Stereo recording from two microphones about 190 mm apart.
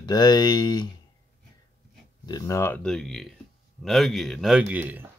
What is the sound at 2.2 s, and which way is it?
A man's voice, 20° left (ahead or behind).